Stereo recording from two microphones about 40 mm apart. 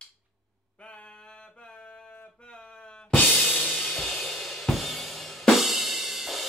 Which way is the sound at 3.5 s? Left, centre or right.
Left.